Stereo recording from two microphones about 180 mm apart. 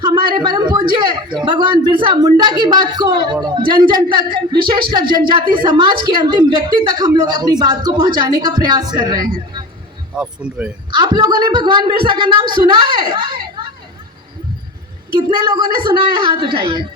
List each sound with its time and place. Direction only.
0.0 s a sound: 25° right (ahead or behind)
0.4 s a woman's voice: 25° right (ahead or behind)
10.2 s speech: 5° right (ahead or behind)
10.9 s speech: 25° right (ahead or behind)
15.1 s speech: 25° right (ahead or behind)